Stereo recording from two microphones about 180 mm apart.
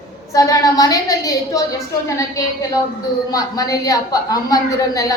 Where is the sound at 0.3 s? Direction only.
20° left (ahead or behind).